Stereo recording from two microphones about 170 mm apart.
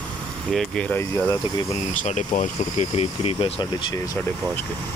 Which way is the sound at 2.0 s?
45° left (ahead or behind).